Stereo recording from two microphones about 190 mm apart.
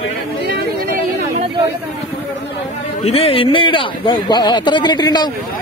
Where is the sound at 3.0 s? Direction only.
30° left (ahead or behind).